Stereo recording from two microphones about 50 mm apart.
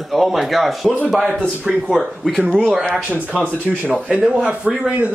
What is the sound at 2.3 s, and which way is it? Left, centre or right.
Speech, centre.